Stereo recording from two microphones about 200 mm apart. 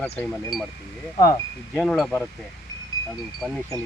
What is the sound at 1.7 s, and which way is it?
Speech, centre (ahead or behind).